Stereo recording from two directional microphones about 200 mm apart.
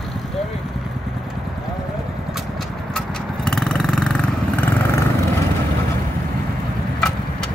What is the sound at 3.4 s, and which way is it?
Vehicle, 5° left (ahead or behind).